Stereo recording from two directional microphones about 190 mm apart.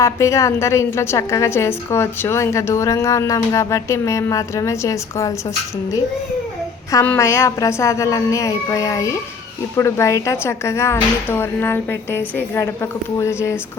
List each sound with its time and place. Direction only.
0.0 s a woman's voice: 15° left (ahead or behind)
6.9 s a woman's voice: 10° left (ahead or behind)